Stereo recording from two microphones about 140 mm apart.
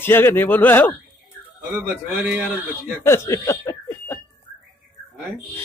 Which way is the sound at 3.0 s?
20° left (ahead or behind).